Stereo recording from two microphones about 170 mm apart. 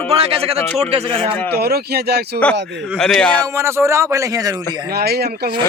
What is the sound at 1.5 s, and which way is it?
Speech, 65° right (ahead or behind).